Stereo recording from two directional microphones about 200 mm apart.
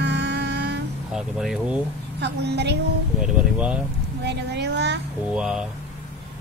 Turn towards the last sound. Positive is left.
turn(degrees=-5)  # may be behind; listen again after turning